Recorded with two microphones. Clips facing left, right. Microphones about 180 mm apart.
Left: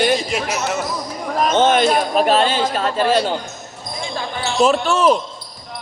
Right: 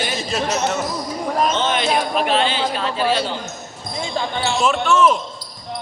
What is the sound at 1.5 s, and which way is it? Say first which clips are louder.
Speech: left 5 dB; 50° left (ahead or behind).